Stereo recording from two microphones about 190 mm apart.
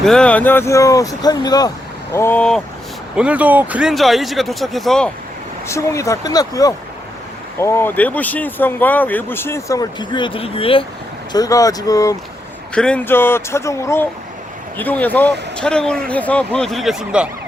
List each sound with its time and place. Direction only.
0.0 s speech: 5° left (ahead or behind)
3.2 s speech: 5° right (ahead or behind)
5.6 s speech: 15° left (ahead or behind)
11.3 s speech: 20° left (ahead or behind)
12.7 s speech: 5° left (ahead or behind)